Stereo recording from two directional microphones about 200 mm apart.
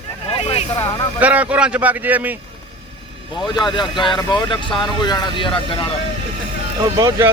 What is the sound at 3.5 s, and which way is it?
Speech, 20° left (ahead or behind).